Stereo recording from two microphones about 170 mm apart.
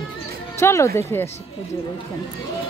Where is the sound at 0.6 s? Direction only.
15° left (ahead or behind).